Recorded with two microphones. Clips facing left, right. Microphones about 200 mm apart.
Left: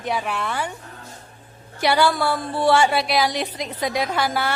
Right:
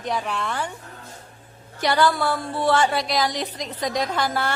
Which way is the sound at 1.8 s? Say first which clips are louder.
Left 1 dB; 10° left (ahead or behind).